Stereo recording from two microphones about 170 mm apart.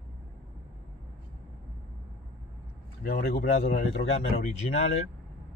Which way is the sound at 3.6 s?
40° left (ahead or behind).